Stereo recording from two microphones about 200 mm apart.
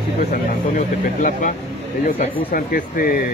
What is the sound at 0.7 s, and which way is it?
Speech, 40° left (ahead or behind).